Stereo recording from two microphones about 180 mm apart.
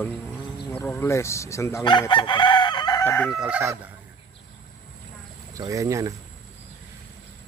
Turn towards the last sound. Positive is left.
turn(degrees=-20)  # may be behind; listen again after turning